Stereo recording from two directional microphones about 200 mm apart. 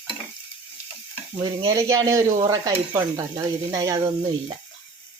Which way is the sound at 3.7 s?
20° right (ahead or behind).